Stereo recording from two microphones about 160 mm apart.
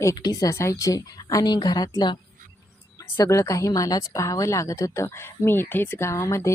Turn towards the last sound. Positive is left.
turn(degrees=20)  # may be behind; listen again after turning